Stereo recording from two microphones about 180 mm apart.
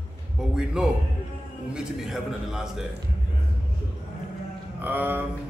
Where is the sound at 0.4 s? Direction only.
5° right (ahead or behind).